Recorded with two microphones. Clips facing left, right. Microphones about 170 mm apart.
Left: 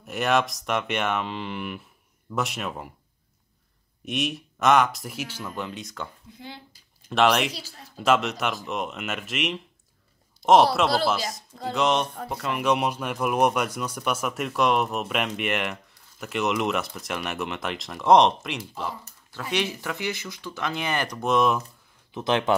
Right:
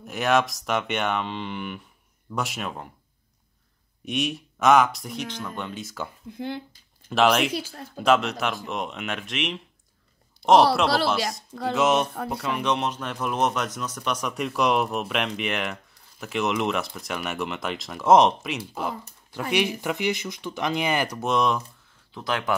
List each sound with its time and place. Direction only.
0.0 s speech: centre (ahead or behind)
4.0 s speech: centre (ahead or behind)
6.3 s speech: 55° right (ahead or behind)
7.1 s speech: centre (ahead or behind)
7.5 s speech: 55° right (ahead or behind)
8.0 s speech: centre (ahead or behind)
11.7 s speech: 5° right (ahead or behind)
19.5 s speech: 15° right (ahead or behind); by 21.6 s 5° left (ahead or behind)
22.1 s speech: 20° left (ahead or behind)